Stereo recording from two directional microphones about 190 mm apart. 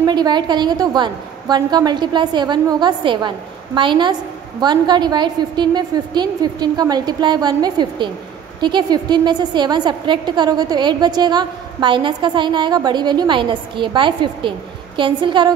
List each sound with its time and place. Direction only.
0.0 s a woman's voice: 20° right (ahead or behind)